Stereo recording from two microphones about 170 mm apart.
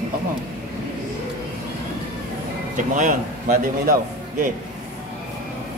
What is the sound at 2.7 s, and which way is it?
Speech, 45° right (ahead or behind).